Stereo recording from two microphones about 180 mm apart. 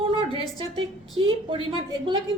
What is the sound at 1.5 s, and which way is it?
Speech, 30° right (ahead or behind).